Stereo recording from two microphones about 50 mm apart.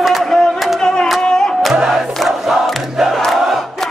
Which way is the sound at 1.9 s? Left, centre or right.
Centre.